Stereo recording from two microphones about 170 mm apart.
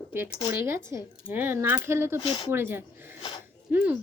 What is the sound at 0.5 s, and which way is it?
Speech, 15° right (ahead or behind).